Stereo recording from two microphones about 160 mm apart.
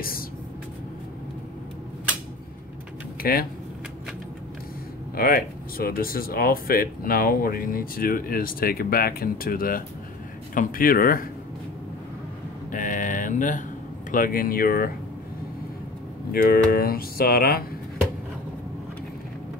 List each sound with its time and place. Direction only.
3.2 s speech: 65° left (ahead or behind)
5.1 s speech: 70° left (ahead or behind)
12.7 s a sound: 55° left (ahead or behind)
14.1 s speech: 60° left (ahead or behind)
16.3 s speech: 70° left (ahead or behind)